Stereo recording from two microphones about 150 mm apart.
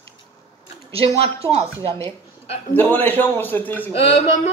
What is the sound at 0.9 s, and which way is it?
Speech, 40° right (ahead or behind).